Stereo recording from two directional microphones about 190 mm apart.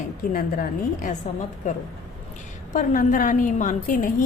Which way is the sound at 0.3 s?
45° left (ahead or behind).